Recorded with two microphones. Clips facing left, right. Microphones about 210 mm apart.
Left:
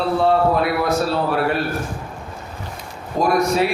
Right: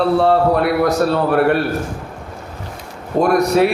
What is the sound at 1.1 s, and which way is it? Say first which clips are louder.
Speech: right 5 dB; 55° right (ahead or behind).